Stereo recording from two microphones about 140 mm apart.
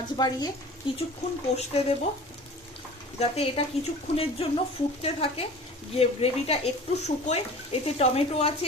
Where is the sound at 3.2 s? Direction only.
45° left (ahead or behind).